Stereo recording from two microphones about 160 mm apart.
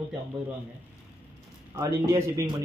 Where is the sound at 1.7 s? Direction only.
20° right (ahead or behind).